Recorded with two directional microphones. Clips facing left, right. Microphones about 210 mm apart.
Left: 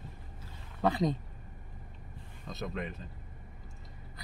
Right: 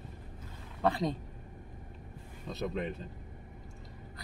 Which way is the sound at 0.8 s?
Centre (ahead or behind).